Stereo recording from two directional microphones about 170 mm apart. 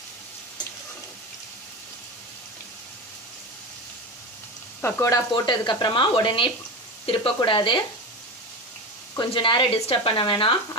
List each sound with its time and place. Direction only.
4.8 s speech: 15° left (ahead or behind)
9.1 s speech: 30° left (ahead or behind)